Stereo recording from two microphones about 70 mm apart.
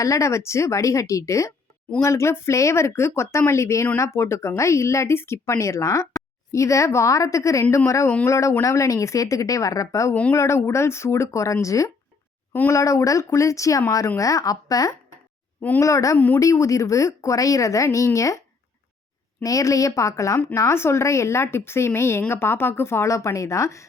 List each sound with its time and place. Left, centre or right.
0.0 s speech: left
16.1 s speech: left
16.4 s speech: left